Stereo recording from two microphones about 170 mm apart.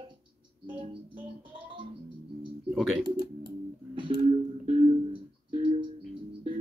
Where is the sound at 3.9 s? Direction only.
30° right (ahead or behind).